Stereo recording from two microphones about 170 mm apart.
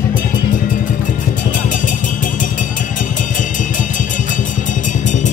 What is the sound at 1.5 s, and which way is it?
Music, 50° left (ahead or behind).